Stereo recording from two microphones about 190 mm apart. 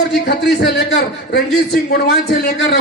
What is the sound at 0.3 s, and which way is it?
A man's voice, 60° left (ahead or behind).